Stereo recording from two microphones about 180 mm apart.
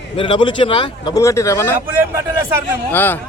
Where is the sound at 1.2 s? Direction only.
15° left (ahead or behind).